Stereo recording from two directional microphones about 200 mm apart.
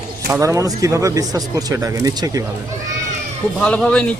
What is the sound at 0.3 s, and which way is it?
Speech, 15° right (ahead or behind).